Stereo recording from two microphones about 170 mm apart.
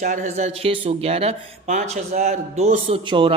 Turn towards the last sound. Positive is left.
turn(degrees=-30)  # may be behind; listen again after turning